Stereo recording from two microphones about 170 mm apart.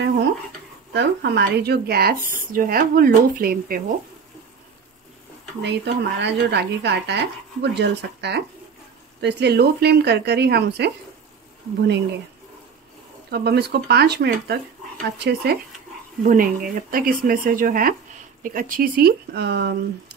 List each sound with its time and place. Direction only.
0.9 s speech: 75° right (ahead or behind); by 3.8 s 60° right (ahead or behind)
5.6 s speech: 90° right; by 10.9 s 75° right (ahead or behind)
13.3 s speech: 70° right (ahead or behind)
16.2 s speech: 55° right (ahead or behind); by 20.2 s 80° right